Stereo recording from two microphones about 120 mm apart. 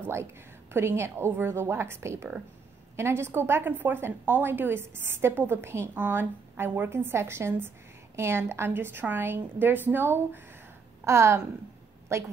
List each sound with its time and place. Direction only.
0.0 s a woman's voice: 20° right (ahead or behind)